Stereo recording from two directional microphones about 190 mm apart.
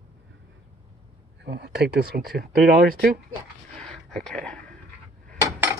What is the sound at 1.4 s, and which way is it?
Speech, 60° right (ahead or behind).